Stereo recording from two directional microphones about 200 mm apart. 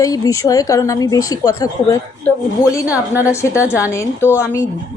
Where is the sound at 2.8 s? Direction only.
5° right (ahead or behind).